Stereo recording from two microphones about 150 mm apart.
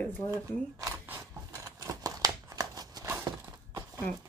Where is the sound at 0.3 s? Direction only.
20° right (ahead or behind).